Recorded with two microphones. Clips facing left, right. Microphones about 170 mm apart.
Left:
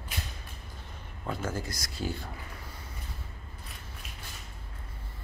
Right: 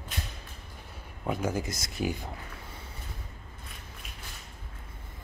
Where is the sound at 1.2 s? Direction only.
15° right (ahead or behind).